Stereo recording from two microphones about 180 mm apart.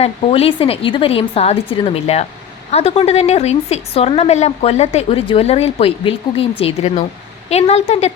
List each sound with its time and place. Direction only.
0.0 s speech: 35° left (ahead or behind)